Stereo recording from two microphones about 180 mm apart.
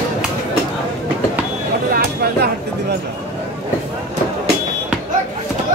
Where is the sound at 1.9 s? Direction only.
65° right (ahead or behind).